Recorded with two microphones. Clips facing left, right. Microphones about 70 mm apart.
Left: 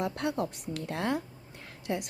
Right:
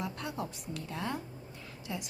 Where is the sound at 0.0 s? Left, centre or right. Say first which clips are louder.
Left 7 dB; left.